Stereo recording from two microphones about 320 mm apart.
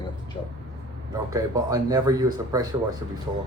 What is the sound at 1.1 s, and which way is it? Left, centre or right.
Speech, centre.